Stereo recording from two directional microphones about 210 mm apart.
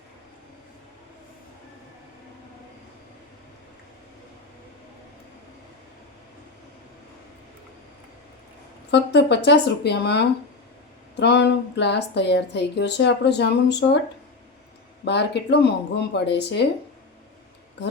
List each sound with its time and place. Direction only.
8.9 s a woman's voice: 55° left (ahead or behind)
15.0 s a woman's voice: 55° left (ahead or behind)